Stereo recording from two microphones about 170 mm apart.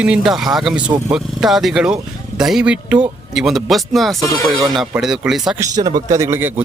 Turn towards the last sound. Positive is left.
turn(degrees=-10)  # may be behind; listen again after turning